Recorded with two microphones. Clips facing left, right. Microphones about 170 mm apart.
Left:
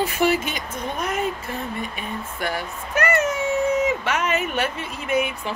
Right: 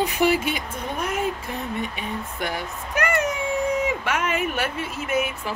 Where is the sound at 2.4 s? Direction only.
15° right (ahead or behind).